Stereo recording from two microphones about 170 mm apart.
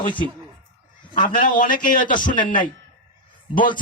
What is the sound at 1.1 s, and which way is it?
A man's voice, 50° left (ahead or behind).